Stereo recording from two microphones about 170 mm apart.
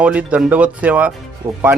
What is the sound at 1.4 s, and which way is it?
Speech, 35° right (ahead or behind).